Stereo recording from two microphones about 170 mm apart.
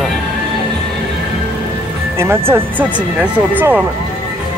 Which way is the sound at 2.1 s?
15° right (ahead or behind).